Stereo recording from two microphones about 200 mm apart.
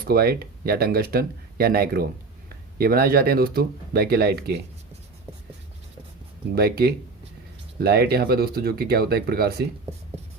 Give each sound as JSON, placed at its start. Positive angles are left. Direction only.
{"t": 0.0, "sound": "speech", "side_deg": -50}
{"t": 6.5, "sound": "speech", "side_deg": -50}